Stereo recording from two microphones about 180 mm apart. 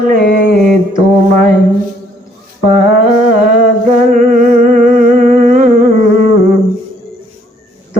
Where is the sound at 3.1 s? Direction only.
45° right (ahead or behind).